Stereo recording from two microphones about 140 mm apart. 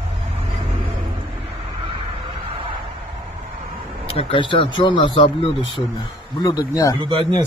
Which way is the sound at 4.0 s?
45° left (ahead or behind).